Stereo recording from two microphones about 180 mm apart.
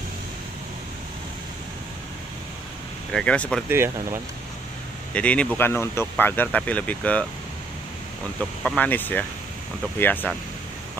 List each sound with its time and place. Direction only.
3.1 s speech: 5° left (ahead or behind)
3.6 s speech: 10° right (ahead or behind)
5.1 s speech: 5° left (ahead or behind)
8.4 s speech: 5° left (ahead or behind)